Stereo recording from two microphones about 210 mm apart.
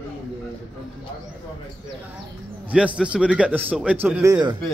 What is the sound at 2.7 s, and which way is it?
Speech, 5° right (ahead or behind).